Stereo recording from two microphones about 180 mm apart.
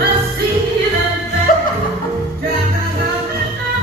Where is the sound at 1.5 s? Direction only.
50° left (ahead or behind).